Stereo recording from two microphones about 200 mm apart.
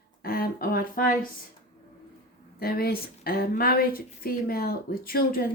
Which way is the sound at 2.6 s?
50° left (ahead or behind).